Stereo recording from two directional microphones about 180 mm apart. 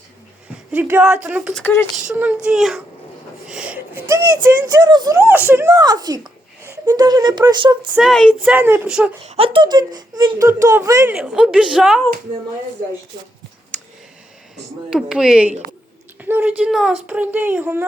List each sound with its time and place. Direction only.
0.7 s speech: 10° right (ahead or behind)
1.5 s speech: 10° left (ahead or behind)
2.0 s a child's voice: 10° right (ahead or behind)
3.5 s a sound: 5° right (ahead or behind)
4.7 s speech: 25° right (ahead or behind)
5.2 s speech: 10° right (ahead or behind)
7.9 s a child's voice: centre (ahead or behind)
8.4 s speech: 10° right (ahead or behind)
9.2 s speech: 35° right (ahead or behind); by 12.0 s 5° right (ahead or behind)
13.7 s a sound: 5° left (ahead or behind)
14.8 s a child's voice: 5° right (ahead or behind)